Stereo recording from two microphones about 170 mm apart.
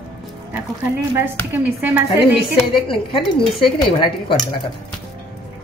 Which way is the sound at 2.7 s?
30° left (ahead or behind).